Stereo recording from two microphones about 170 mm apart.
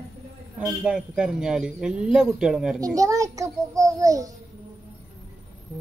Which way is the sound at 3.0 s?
20° right (ahead or behind).